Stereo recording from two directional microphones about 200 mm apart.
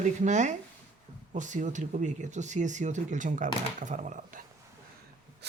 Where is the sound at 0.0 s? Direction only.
35° right (ahead or behind).